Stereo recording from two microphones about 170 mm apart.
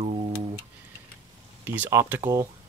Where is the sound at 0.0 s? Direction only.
30° right (ahead or behind).